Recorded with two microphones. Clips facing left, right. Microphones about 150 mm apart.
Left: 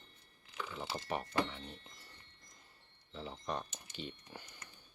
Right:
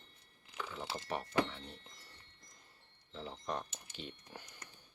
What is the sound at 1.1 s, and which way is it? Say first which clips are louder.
Speech: right 1 dB; 5° left (ahead or behind).